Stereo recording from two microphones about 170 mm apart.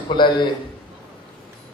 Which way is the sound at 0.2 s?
25° left (ahead or behind).